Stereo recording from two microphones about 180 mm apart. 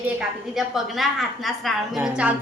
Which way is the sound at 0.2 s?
Centre (ahead or behind).